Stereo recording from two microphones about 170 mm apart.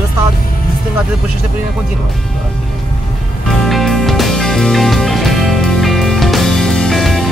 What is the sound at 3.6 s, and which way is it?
Music, centre (ahead or behind).